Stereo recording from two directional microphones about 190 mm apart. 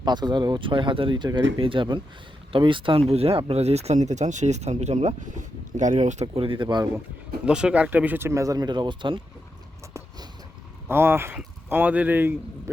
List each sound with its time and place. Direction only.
0.0 s speech: 20° right (ahead or behind); by 6.2 s 40° right (ahead or behind)
6.2 s speech: 30° right (ahead or behind)
7.4 s speech: 5° right (ahead or behind); by 9.2 s 25° right (ahead or behind)
10.8 s speech: 10° right (ahead or behind)